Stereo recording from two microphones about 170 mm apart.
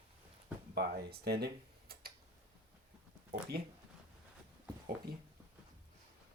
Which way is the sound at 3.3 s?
65° right (ahead or behind).